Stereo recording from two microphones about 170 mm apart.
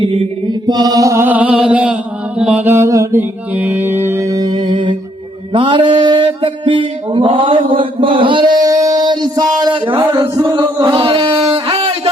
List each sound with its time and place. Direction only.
0.0 s mantra: 35° right (ahead or behind)
0.7 s mantra: 20° right (ahead or behind)
7.7 s chant: 30° right (ahead or behind)